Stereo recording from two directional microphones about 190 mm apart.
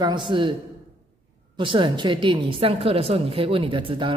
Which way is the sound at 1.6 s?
25° right (ahead or behind).